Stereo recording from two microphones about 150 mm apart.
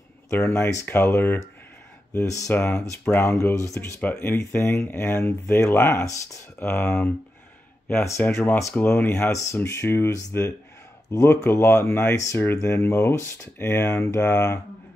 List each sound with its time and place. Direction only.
0.3 s speech: 15° left (ahead or behind)